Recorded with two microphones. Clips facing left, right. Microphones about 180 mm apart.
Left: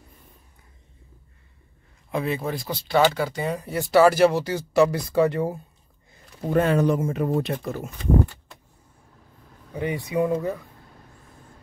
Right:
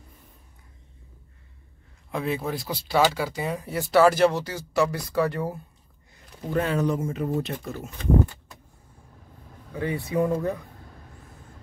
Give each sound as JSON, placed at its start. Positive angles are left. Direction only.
{"t": 2.0, "sound": "speech", "side_deg": 0}
{"t": 4.5, "sound": "speech", "side_deg": 20}
{"t": 6.5, "sound": "speech", "side_deg": 60}
{"t": 9.8, "sound": "speech", "side_deg": 20}
{"t": 10.2, "sound": "speech", "side_deg": 0}